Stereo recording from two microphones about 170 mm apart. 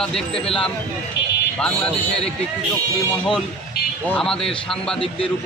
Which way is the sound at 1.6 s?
5° left (ahead or behind).